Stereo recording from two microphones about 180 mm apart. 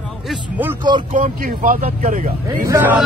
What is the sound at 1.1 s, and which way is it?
Speech, 45° right (ahead or behind).